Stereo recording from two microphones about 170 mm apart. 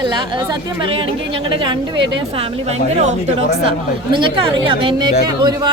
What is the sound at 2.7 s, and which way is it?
Speech, 40° right (ahead or behind).